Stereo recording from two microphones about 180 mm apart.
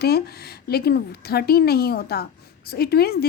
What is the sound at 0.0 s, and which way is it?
A woman's voice, 60° left (ahead or behind).